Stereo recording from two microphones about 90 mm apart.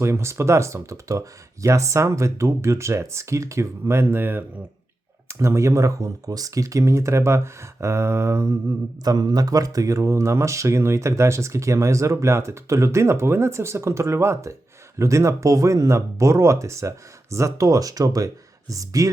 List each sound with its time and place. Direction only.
0.0 s speech: 30° right (ahead or behind)
9.0 s speech: 45° right (ahead or behind)